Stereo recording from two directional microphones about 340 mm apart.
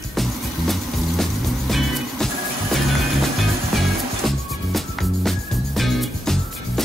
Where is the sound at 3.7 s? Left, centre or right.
Centre.